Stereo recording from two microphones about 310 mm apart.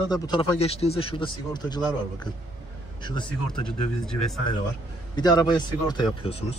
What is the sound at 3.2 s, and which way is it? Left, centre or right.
Speech, centre.